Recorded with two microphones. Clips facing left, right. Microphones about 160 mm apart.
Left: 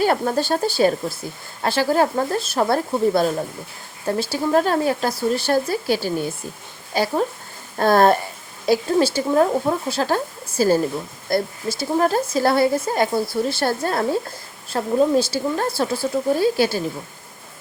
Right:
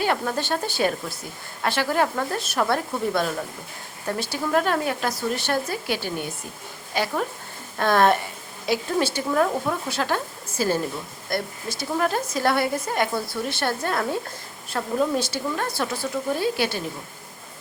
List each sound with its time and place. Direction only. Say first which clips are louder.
0.0 s speech: left 5 dB; 40° left (ahead or behind)